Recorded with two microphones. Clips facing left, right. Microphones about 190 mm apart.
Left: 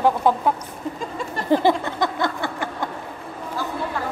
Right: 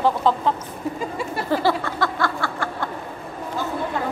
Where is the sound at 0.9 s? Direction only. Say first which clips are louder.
Right 2 dB; 10° right (ahead or behind).